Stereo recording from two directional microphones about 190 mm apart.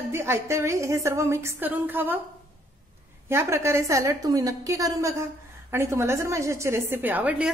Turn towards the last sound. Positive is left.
turn(degrees=-5)  # may be behind; listen again after turning